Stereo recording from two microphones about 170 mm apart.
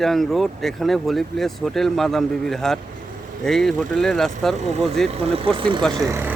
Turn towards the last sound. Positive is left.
turn(degrees=-15)  # may be behind; listen again after turning